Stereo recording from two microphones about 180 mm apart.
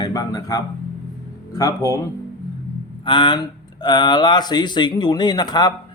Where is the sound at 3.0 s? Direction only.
25° left (ahead or behind).